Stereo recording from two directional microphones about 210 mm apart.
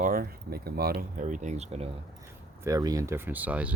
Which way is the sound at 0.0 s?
45° right (ahead or behind).